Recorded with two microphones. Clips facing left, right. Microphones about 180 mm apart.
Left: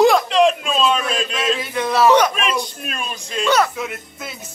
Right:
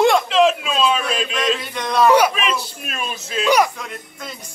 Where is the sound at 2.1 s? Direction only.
10° right (ahead or behind).